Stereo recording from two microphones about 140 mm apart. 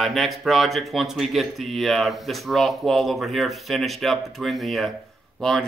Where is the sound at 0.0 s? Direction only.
Centre (ahead or behind).